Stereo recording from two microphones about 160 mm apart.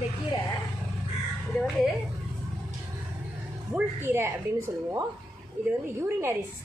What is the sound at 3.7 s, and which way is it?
A woman's voice, 15° right (ahead or behind).